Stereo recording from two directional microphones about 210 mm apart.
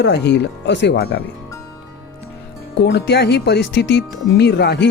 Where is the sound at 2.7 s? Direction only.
55° left (ahead or behind).